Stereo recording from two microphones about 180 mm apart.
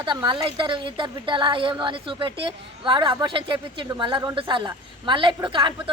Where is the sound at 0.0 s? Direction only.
25° right (ahead or behind).